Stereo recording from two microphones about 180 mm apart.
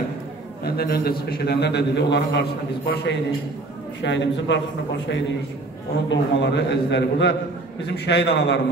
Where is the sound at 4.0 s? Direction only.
85° left.